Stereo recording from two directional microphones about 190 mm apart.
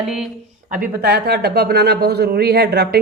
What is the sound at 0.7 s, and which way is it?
A man's voice, 55° right (ahead or behind).